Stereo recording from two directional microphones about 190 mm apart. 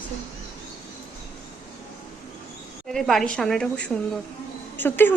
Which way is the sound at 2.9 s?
Centre (ahead or behind).